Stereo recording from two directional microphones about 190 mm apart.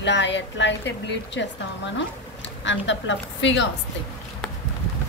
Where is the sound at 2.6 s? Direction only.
75° left (ahead or behind).